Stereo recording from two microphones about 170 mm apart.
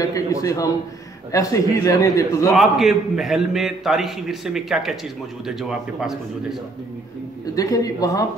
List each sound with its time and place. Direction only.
0.0 s a man's voice: 20° left (ahead or behind)
2.5 s a man's voice: centre (ahead or behind)
7.5 s a man's voice: 20° left (ahead or behind)